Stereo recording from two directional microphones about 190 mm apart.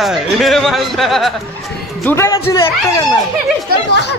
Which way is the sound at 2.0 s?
15° left (ahead or behind).